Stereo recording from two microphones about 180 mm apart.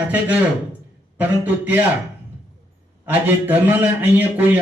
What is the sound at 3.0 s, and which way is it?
A man's voice, 10° right (ahead or behind).